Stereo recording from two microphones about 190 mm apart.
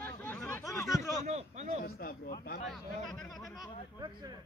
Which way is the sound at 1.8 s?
50° left (ahead or behind).